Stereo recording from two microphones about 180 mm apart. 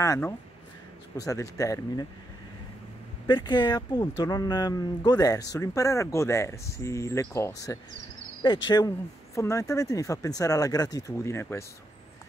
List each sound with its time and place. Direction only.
0.0 s speech: 15° left (ahead or behind)
3.3 s speech: 25° left (ahead or behind)
8.6 s speech: 20° left (ahead or behind)